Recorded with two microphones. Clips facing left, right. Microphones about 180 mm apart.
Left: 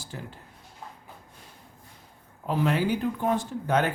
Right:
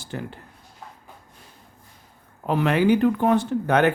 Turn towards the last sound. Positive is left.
turn(degrees=-65)  # may be behind; listen again after turning